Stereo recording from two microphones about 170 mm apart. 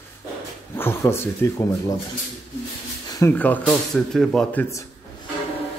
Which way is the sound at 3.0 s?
20° left (ahead or behind).